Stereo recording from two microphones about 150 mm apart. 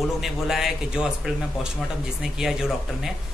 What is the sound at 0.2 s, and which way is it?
A man's voice, centre (ahead or behind).